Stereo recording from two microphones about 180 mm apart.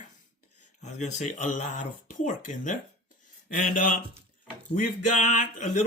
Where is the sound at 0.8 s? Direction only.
40° left (ahead or behind).